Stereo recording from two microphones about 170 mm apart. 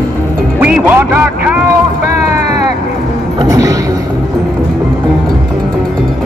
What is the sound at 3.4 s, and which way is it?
Music, 20° right (ahead or behind).